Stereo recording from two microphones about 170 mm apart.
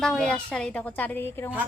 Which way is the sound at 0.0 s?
Centre (ahead or behind).